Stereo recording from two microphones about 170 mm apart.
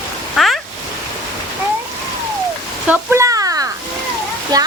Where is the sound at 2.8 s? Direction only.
10° right (ahead or behind).